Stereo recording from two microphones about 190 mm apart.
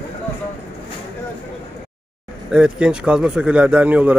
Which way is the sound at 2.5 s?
5° right (ahead or behind).